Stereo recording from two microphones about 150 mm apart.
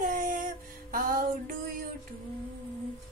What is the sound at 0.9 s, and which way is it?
Music, 70° right (ahead or behind).